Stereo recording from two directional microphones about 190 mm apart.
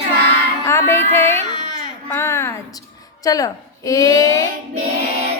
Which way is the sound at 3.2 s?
20° left (ahead or behind).